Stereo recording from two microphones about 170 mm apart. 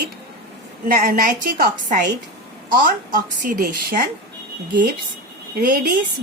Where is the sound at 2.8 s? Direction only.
55° right (ahead or behind).